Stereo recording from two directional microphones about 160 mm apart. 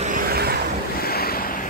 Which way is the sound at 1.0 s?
70° left (ahead or behind).